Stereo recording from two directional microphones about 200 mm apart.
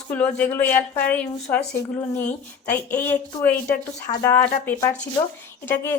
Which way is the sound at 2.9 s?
10° left (ahead or behind).